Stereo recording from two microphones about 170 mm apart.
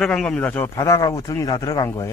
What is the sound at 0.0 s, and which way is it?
A man's voice, 5° left (ahead or behind).